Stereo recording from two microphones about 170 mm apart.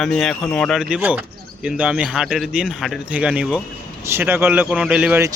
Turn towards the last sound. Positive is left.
turn(degrees=-10)  # may be behind; listen again after turning